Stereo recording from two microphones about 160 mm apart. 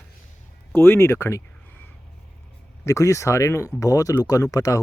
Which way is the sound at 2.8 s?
20° left (ahead or behind).